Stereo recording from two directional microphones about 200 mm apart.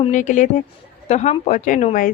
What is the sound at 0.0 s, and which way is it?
A woman's voice, 40° left (ahead or behind).